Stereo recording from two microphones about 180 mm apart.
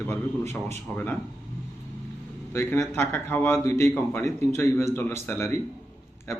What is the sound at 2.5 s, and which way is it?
A man's voice, 15° left (ahead or behind).